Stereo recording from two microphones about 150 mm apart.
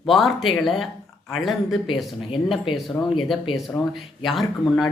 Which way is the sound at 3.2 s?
Centre (ahead or behind).